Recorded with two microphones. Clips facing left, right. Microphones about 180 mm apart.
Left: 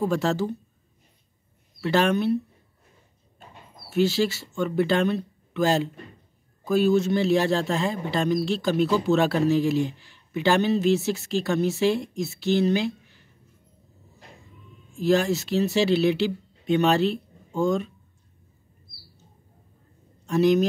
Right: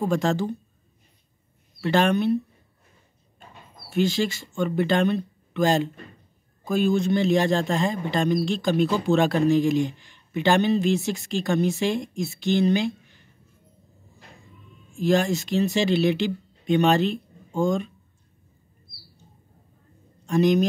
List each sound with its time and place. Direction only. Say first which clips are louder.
0.1 s speech: right 1 dB; 5° left (ahead or behind)
1.8 s speech: right 1 dB; 5° left (ahead or behind)
3.9 s speech: left 1 dB; 5° left (ahead or behind)
15.0 s speech: even; 5° left (ahead or behind)
20.2 s a man's voice: even; 5° left (ahead or behind)